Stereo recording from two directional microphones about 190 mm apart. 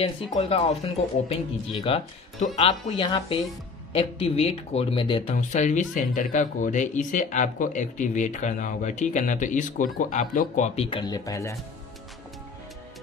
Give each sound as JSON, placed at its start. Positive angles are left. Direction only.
{"t": 0.0, "sound": "speech", "side_deg": 30}
{"t": 5.3, "sound": "speech", "side_deg": 40}
{"t": 10.9, "sound": "speech", "side_deg": 25}